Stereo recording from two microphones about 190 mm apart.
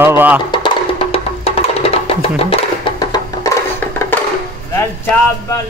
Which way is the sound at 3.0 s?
20° left (ahead or behind).